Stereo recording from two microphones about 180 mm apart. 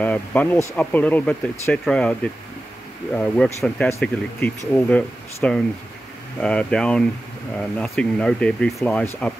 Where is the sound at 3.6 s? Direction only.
5° left (ahead or behind).